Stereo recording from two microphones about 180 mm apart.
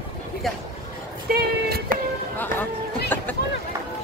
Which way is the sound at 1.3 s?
60° right (ahead or behind).